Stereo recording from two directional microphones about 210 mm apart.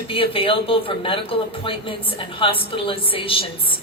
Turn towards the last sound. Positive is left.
turn(degrees=25)  # may be behind; listen again after turning